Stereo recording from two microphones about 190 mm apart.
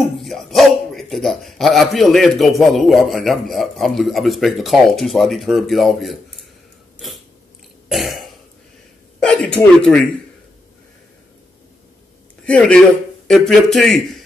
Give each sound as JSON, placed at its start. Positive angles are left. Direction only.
{"t": 0.0, "sound": "speech", "side_deg": 0}
{"t": 7.9, "sound": "cough", "side_deg": 0}
{"t": 9.2, "sound": "speech", "side_deg": 5}
{"t": 12.4, "sound": "speech", "side_deg": 5}